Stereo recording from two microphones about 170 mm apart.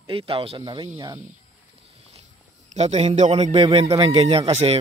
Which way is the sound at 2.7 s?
40° right (ahead or behind).